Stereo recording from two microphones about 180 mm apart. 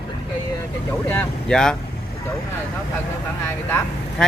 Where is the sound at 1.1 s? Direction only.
5° left (ahead or behind).